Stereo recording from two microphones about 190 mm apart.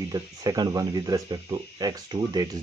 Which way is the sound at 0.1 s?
20° right (ahead or behind).